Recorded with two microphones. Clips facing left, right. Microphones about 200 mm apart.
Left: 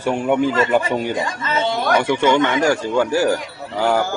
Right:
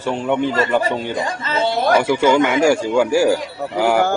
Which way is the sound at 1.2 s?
30° right (ahead or behind).